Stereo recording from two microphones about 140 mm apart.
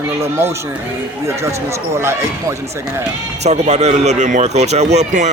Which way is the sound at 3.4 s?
50° right (ahead or behind).